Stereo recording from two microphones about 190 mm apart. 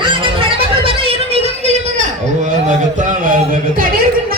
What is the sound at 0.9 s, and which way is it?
Music, 30° right (ahead or behind).